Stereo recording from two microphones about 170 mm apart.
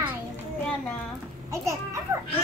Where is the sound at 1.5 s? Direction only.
15° right (ahead or behind).